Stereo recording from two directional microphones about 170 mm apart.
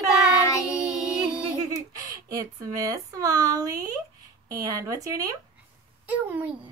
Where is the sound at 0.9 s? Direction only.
5° right (ahead or behind).